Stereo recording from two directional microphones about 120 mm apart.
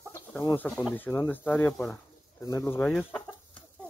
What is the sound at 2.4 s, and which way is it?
Speech, 25° left (ahead or behind).